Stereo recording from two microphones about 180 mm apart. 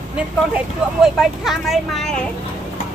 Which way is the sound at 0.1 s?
5° right (ahead or behind).